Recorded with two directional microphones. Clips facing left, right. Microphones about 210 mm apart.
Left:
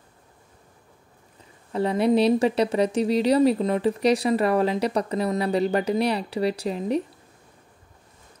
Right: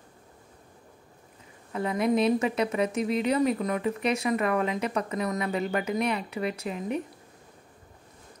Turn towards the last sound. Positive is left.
turn(degrees=30)  # may be behind; listen again after turning